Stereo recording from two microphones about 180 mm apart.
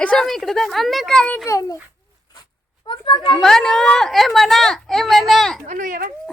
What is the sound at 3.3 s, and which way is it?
A child's voice, centre (ahead or behind).